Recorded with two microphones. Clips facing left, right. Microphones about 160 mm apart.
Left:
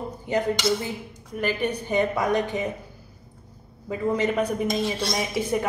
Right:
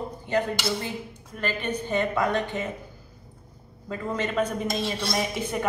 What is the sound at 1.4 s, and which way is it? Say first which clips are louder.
A woman's voice: left 3 dB; 15° left (ahead or behind).